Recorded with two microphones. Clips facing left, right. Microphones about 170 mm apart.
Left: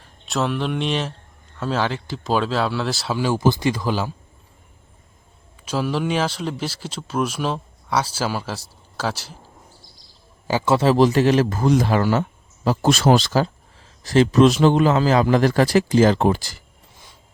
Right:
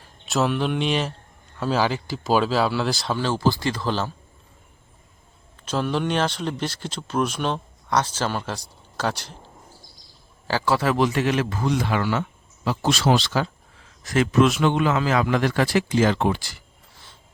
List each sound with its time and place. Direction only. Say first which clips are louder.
0.0 s speech: right 1 dB; centre (ahead or behind)
5.6 s speech: left 1 dB; 5° left (ahead or behind)
10.4 s a man's voice: left 4 dB; 20° left (ahead or behind); by 16.6 s 40° left (ahead or behind)